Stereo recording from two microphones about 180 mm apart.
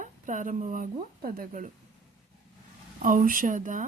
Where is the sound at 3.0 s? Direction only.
50° right (ahead or behind).